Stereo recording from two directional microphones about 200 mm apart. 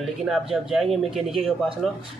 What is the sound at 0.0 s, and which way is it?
A man's voice, centre (ahead or behind).